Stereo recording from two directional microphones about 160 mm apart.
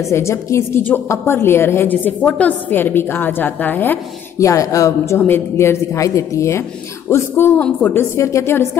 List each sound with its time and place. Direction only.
0.1 s a woman's voice: 15° left (ahead or behind)